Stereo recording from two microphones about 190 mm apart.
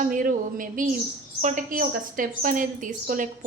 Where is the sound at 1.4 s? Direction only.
40° right (ahead or behind).